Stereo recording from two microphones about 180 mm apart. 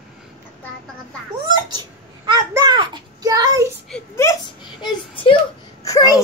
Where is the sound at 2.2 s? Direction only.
20° right (ahead or behind).